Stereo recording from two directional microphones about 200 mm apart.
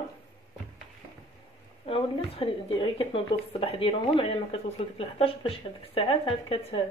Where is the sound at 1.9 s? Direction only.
25° left (ahead or behind).